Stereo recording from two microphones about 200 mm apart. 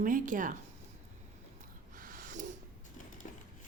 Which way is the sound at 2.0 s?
45° right (ahead or behind).